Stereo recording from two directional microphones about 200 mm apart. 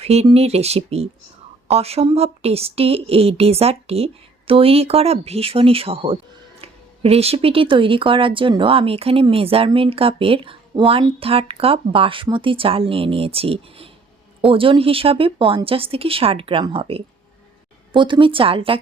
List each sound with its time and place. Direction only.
0.0 s speech: 30° right (ahead or behind)